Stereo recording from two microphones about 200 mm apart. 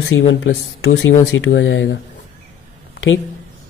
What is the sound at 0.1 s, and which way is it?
Speech, 70° left (ahead or behind).